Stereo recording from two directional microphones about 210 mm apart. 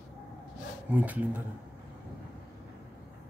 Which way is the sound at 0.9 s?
5° right (ahead or behind).